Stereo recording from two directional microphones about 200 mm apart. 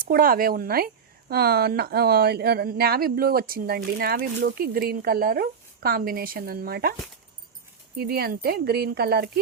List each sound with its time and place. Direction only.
0.0 s speech: 45° right (ahead or behind)
7.9 s speech: 50° right (ahead or behind)